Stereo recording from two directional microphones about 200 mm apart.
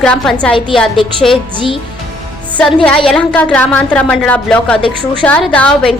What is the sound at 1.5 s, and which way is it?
Speech, 25° left (ahead or behind).